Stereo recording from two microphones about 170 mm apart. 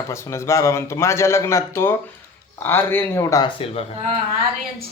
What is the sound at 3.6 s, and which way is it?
Speech, 35° left (ahead or behind).